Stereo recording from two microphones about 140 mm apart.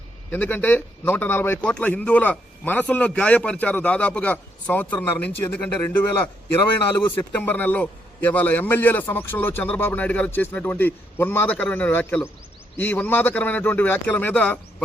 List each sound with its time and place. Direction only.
0.3 s a man's voice: 15° left (ahead or behind)